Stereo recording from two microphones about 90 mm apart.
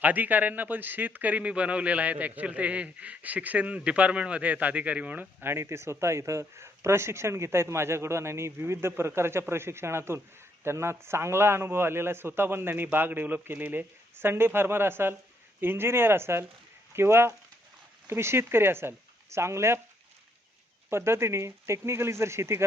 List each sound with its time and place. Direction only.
0.0 s speech: 20° right (ahead or behind)
20.9 s speech: 30° right (ahead or behind)